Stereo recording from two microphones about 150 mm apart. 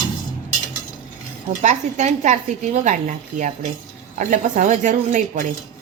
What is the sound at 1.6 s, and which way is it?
A woman's voice, 50° right (ahead or behind).